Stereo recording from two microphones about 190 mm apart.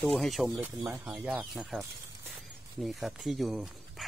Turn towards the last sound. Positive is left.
turn(degrees=0)  # may be behind; listen again after turning